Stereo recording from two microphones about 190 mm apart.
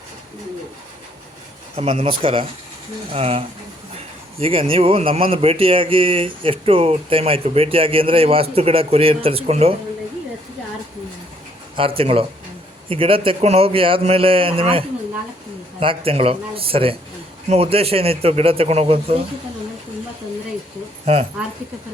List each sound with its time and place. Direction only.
1.7 s a man's voice: 30° right (ahead or behind)
11.8 s a man's voice: 30° right (ahead or behind)
21.0 s speech: 30° right (ahead or behind)